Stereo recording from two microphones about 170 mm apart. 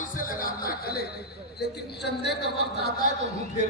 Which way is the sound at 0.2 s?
60° left (ahead or behind).